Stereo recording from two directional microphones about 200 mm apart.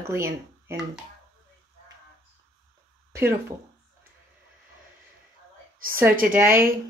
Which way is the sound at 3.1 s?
15° right (ahead or behind).